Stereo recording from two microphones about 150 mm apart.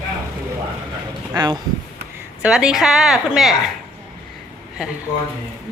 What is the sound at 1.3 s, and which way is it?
Speech, 25° right (ahead or behind).